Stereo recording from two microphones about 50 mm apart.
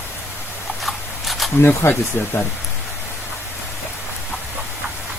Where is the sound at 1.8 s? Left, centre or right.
Left.